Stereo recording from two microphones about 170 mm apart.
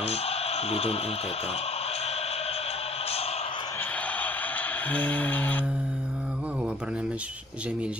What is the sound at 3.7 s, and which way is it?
Music, 10° left (ahead or behind).